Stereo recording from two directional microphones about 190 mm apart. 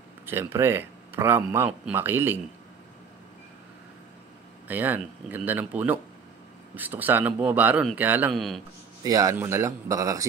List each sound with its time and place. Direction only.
0.3 s speech: 10° right (ahead or behind)
4.6 s speech: 10° right (ahead or behind)
9.0 s speech: 15° right (ahead or behind)